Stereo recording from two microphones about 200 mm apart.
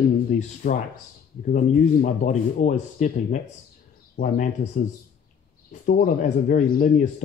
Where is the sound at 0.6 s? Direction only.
50° left (ahead or behind).